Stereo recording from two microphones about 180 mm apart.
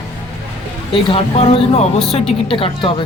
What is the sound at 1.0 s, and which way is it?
Speech, 30° left (ahead or behind).